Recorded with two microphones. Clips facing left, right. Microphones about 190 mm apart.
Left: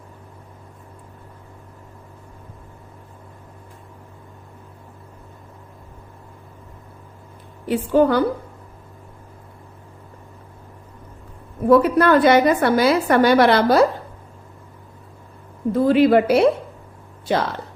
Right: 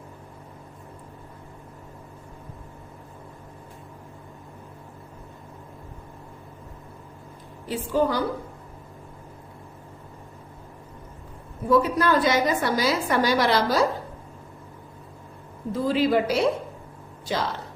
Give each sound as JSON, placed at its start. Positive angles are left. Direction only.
{"t": 7.7, "sound": "a woman's voice", "side_deg": 60}
{"t": 11.7, "sound": "a woman's voice", "side_deg": 60}
{"t": 15.7, "sound": "a woman's voice", "side_deg": 60}